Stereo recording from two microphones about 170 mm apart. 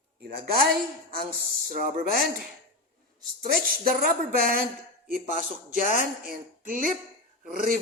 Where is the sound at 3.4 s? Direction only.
55° right (ahead or behind).